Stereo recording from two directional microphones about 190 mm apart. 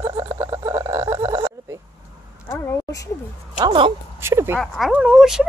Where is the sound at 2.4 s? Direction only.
15° left (ahead or behind).